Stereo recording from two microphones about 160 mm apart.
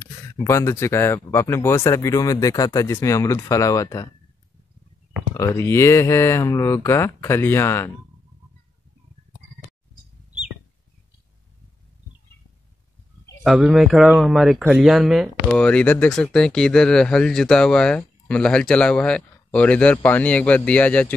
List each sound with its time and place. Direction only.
0.4 s speech: 20° left (ahead or behind)
5.3 s speech: 20° left (ahead or behind)
13.4 s speech: centre (ahead or behind)
15.5 s speech: 10° left (ahead or behind)